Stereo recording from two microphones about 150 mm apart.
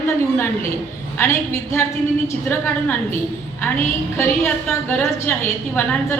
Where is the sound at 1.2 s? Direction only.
15° left (ahead or behind).